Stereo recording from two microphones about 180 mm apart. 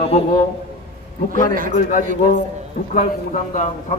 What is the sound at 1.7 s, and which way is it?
A man's voice, 45° left (ahead or behind).